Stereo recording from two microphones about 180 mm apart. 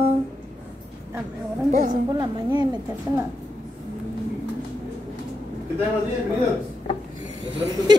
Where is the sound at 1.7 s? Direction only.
40° right (ahead or behind).